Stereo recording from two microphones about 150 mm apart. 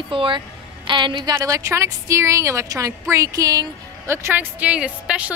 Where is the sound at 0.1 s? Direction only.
35° right (ahead or behind).